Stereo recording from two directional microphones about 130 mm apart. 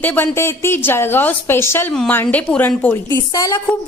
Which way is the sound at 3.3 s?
25° left (ahead or behind).